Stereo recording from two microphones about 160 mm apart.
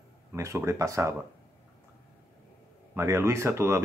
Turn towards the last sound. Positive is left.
turn(degrees=-15)  # may be behind; listen again after turning